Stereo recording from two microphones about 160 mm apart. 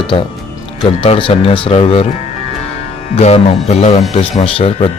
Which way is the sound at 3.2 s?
40° left (ahead or behind).